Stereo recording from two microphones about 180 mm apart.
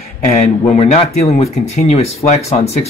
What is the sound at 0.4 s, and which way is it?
Speech, 35° left (ahead or behind).